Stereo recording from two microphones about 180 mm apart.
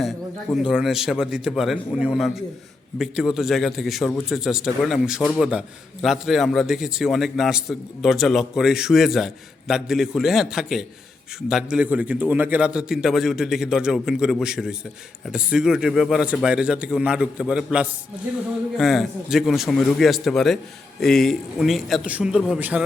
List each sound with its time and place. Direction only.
0.5 s a man's voice: 5° right (ahead or behind)